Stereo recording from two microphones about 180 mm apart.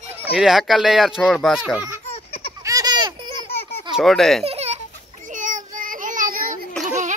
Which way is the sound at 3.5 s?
35° left (ahead or behind).